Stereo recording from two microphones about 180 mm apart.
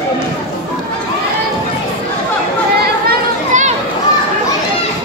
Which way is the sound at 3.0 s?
45° right (ahead or behind).